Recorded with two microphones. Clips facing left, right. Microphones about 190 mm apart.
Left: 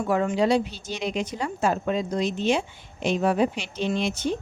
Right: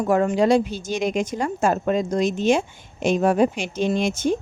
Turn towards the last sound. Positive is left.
turn(degrees=-45)  # may be behind; listen again after turning